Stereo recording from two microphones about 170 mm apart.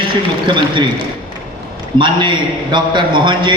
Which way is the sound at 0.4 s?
30° right (ahead or behind).